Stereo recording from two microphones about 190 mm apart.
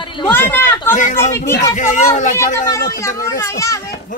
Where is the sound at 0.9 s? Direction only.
40° left (ahead or behind).